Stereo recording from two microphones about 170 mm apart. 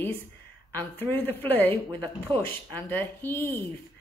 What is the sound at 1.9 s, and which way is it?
Speech, 30° right (ahead or behind).